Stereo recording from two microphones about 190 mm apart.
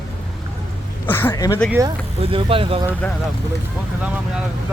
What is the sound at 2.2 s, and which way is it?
Speech, 30° right (ahead or behind).